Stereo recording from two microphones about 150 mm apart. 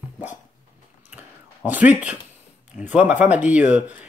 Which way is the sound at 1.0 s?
10° right (ahead or behind).